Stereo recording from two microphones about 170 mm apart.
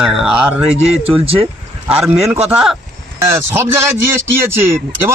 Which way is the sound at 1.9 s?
10° right (ahead or behind).